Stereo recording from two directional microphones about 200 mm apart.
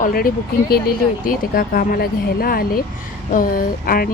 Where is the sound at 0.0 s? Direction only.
50° left (ahead or behind).